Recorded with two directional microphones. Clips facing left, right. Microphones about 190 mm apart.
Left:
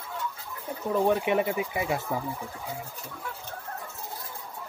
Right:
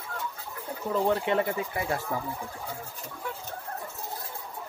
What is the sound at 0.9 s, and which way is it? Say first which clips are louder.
Speech: left 2 dB; 15° left (ahead or behind).